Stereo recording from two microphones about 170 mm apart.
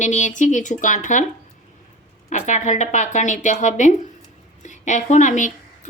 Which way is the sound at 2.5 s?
45° left (ahead or behind).